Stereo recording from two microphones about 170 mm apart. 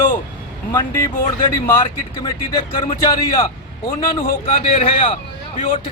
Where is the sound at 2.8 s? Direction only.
20° left (ahead or behind).